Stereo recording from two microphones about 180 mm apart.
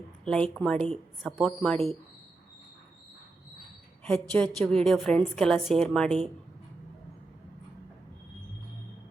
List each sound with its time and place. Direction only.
0.3 s a woman's voice: 5° left (ahead or behind)
4.0 s a woman's voice: 5° left (ahead or behind)